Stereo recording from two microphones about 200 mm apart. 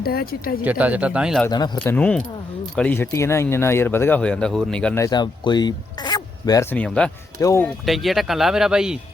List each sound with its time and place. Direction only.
0.0 s speech: 50° left (ahead or behind)
0.6 s speech: 5° right (ahead or behind)
1.5 s speech: 20° left (ahead or behind)
1.8 s speech: 10° left (ahead or behind)
5.0 s speech: 20° left (ahead or behind)
7.9 s speech: centre (ahead or behind)